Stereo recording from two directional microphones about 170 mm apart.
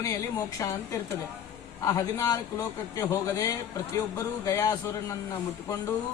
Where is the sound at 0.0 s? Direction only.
20° left (ahead or behind).